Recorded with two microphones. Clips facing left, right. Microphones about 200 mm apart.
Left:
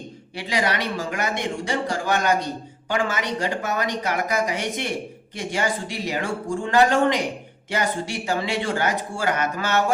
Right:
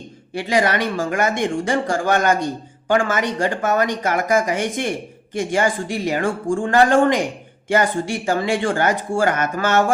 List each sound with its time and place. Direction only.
0.3 s a man's voice: 50° right (ahead or behind)